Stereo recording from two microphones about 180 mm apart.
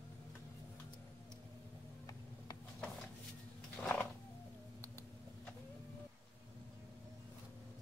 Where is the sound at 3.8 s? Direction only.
10° left (ahead or behind).